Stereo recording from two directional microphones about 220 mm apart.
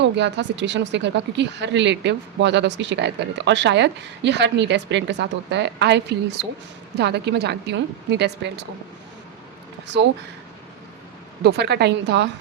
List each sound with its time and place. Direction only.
0.0 s speech: 55° right (ahead or behind)
11.4 s speech: 50° right (ahead or behind)